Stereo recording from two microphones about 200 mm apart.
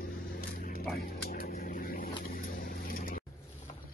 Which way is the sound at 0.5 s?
45° left (ahead or behind).